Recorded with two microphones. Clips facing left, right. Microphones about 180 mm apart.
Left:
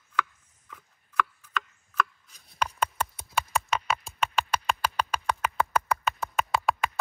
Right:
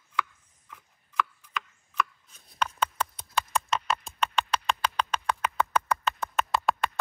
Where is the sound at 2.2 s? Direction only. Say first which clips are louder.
Even; 35° left (ahead or behind).